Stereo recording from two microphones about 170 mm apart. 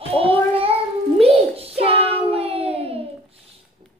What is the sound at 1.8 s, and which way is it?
Child singing, 35° right (ahead or behind).